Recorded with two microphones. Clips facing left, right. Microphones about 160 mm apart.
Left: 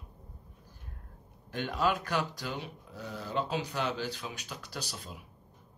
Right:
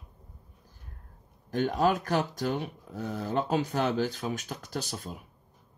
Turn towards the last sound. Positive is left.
turn(degrees=-45)  # may be behind; listen again after turning